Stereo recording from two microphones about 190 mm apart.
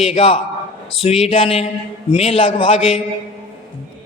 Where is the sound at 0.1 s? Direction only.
30° left (ahead or behind).